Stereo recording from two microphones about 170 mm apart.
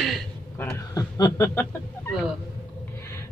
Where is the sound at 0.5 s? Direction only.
15° left (ahead or behind).